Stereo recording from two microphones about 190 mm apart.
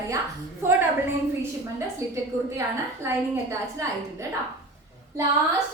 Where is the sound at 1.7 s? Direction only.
15° right (ahead or behind).